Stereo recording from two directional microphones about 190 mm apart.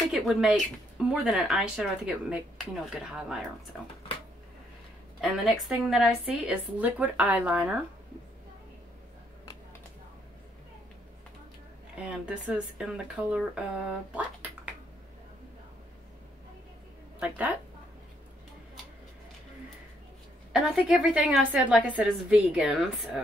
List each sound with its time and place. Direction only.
0.1 s speech: centre (ahead or behind)
5.2 s speech: centre (ahead or behind)
12.0 s speech: 5° right (ahead or behind)
14.1 s a sound: 10° right (ahead or behind)
20.5 s speech: 5° right (ahead or behind)